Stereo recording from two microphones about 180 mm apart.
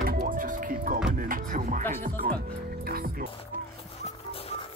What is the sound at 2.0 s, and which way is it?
Music, 55° right (ahead or behind).